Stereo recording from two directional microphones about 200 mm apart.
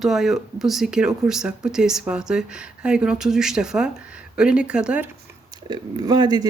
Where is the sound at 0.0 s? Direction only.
Centre (ahead or behind).